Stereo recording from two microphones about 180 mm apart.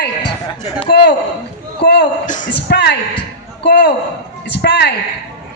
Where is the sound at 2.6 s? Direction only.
65° left (ahead or behind).